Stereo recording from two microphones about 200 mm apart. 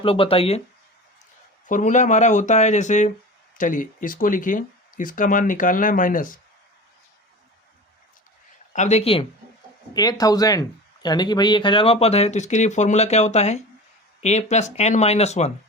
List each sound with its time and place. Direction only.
0.0 s speech: 25° left (ahead or behind)
1.6 s speech: 40° left (ahead or behind)
8.7 s speech: 35° left (ahead or behind)
9.9 s speech: 20° left (ahead or behind)